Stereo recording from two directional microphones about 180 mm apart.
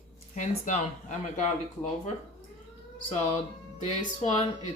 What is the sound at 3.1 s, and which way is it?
Speech, 30° left (ahead or behind).